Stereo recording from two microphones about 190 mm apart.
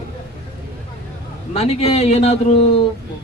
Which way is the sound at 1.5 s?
30° left (ahead or behind).